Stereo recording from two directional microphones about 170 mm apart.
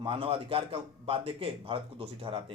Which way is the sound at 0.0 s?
30° right (ahead or behind).